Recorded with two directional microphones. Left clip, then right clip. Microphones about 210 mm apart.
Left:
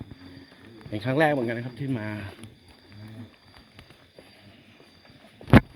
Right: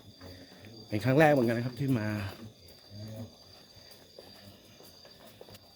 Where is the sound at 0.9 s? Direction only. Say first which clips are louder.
Left 1 dB; 20° right (ahead or behind).